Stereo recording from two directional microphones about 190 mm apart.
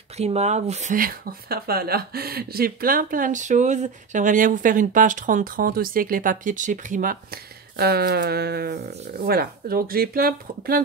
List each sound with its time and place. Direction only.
0.2 s speech: 35° right (ahead or behind)
7.7 s speech: 55° right (ahead or behind)